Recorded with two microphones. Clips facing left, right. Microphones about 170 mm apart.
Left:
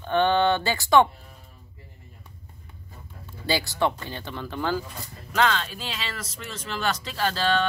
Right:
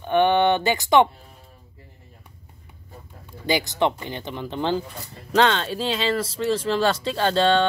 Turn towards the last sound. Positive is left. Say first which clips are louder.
# right 5 dB
turn(degrees=-30)  # may be behind; listen again after turning